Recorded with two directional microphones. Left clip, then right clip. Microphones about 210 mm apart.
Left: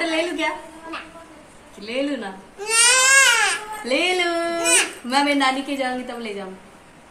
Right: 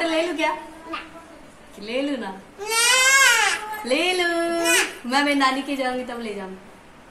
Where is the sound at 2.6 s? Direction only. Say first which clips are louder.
Left 2 dB; 25° left (ahead or behind).